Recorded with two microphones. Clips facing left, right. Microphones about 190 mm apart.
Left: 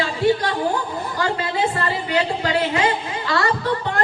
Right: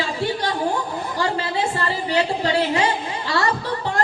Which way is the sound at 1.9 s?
30° right (ahead or behind).